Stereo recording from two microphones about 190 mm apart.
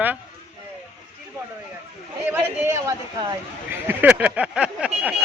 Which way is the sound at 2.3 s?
15° right (ahead or behind).